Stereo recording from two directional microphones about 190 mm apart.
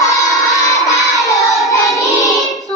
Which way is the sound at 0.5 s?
15° left (ahead or behind).